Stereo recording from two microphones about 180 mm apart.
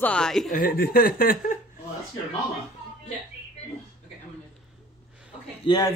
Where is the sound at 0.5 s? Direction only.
55° left (ahead or behind).